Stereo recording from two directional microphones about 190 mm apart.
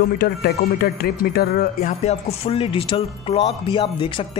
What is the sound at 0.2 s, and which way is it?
Speech, 55° left (ahead or behind).